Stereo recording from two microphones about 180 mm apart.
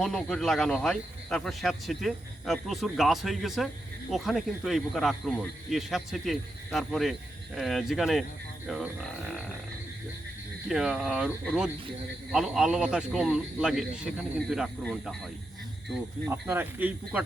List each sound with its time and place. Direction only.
0.0 s speech: 5° left (ahead or behind)
10.7 s speech: 5° right (ahead or behind)
16.3 s speech: 10° right (ahead or behind)